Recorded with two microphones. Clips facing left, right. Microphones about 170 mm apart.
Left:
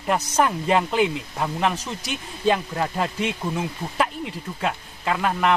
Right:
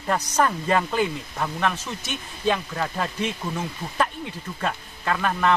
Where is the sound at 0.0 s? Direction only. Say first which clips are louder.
Left 1 dB; 10° left (ahead or behind); by 2.5 s 30° left (ahead or behind).